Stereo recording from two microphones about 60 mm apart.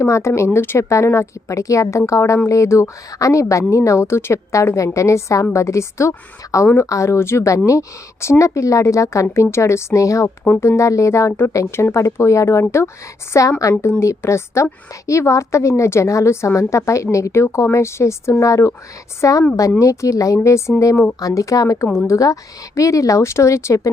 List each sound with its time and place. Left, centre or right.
0.0 s speech: left
0.8 s a woman's voice: left
10.6 s a woman's voice: left
13.3 s speech: left
13.6 s a woman's voice: left
14.0 s a woman's voice: left
19.2 s a woman's voice: left
21.2 s speech: left
22.0 s a woman's voice: left